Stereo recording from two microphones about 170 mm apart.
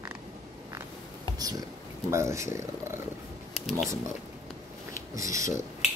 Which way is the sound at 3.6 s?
Centre (ahead or behind).